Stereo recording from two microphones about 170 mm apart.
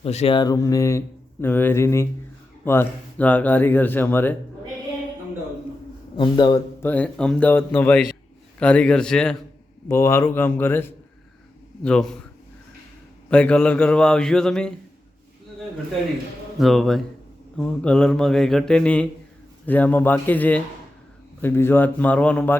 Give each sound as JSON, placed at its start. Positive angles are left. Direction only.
{"t": 0.0, "sound": "speech", "side_deg": 35}
{"t": 0.3, "sound": "speech", "side_deg": 20}
{"t": 6.1, "sound": "a man's voice", "side_deg": 25}
{"t": 6.8, "sound": "speech", "side_deg": 10}
{"t": 8.5, "sound": "mantra", "side_deg": 5}
{"t": 9.9, "sound": "speech", "side_deg": 15}
{"t": 11.8, "sound": "mantra", "side_deg": 5}
{"t": 13.3, "sound": "mantra", "side_deg": 5}
{"t": 16.6, "sound": "mantra", "side_deg": 0}
{"t": 19.6, "sound": "speech", "side_deg": 10}